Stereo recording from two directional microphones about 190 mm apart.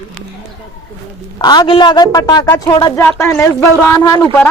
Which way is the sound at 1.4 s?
20° left (ahead or behind).